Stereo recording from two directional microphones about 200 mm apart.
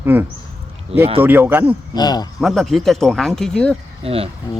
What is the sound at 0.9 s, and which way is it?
Speech, 30° right (ahead or behind).